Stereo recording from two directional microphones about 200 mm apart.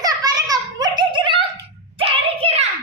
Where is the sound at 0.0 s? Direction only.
20° right (ahead or behind).